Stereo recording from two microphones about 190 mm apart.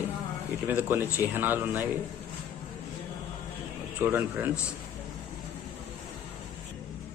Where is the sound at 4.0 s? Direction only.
10° right (ahead or behind).